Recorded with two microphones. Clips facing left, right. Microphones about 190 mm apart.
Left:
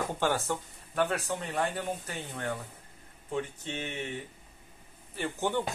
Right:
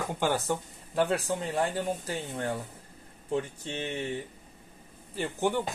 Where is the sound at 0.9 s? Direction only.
30° right (ahead or behind).